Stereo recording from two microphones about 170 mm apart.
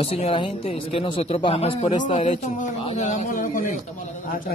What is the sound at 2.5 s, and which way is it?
Speech, 45° left (ahead or behind).